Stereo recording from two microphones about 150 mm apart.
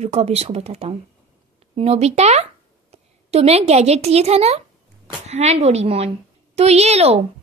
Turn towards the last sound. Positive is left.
turn(degrees=-45)  # may be behind; listen again after turning